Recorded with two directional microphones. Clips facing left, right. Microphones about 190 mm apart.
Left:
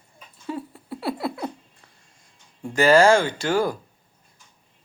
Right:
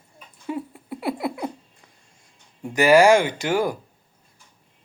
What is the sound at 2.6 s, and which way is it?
A man's voice, 15° right (ahead or behind).